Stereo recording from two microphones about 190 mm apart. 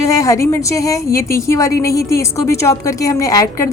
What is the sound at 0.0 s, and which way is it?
A woman's voice, 15° left (ahead or behind).